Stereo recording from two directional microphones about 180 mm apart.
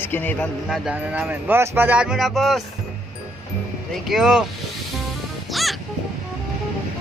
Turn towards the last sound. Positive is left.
turn(degrees=0)  # may be behind; listen again after turning